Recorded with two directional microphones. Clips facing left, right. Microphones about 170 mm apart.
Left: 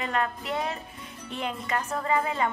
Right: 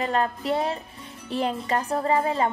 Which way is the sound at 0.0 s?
35° right (ahead or behind).